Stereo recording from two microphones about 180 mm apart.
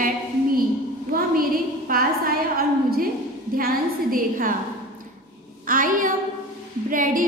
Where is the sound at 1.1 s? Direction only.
55° right (ahead or behind).